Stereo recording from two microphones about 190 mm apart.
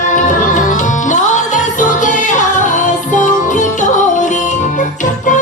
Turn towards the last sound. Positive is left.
turn(degrees=40)  # may be behind; listen again after turning